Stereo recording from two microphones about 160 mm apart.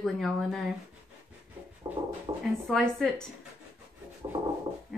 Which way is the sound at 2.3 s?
25° right (ahead or behind).